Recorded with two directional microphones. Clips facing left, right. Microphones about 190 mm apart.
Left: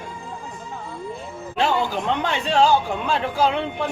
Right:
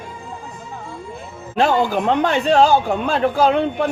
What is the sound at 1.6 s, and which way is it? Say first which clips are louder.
Speech: right 5 dB; 50° right (ahead or behind).